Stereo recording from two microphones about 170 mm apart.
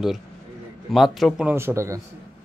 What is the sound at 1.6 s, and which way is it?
Speech, 15° right (ahead or behind).